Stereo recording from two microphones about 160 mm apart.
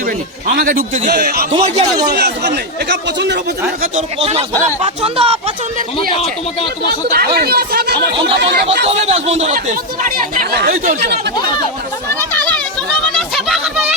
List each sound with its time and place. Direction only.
0.4 s a man's voice: 65° right (ahead or behind)
1.1 s a man's voice: 75° right (ahead or behind)
1.5 s speech: 40° right (ahead or behind)
1.9 s speech: 25° right (ahead or behind)
2.1 s speech: 90° right
3.9 s speech: 40° right (ahead or behind)
6.0 s speech: 35° left (ahead or behind)
7.1 s speech: 75° right (ahead or behind)
8.1 s speech: 35° right (ahead or behind)
8.4 s speech: 90° right
8.9 s speech: 40° right (ahead or behind); by 10.8 s 70° right (ahead or behind)
13.1 s a sound: centre (ahead or behind)